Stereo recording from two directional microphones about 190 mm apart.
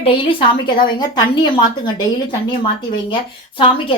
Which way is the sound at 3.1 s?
25° left (ahead or behind).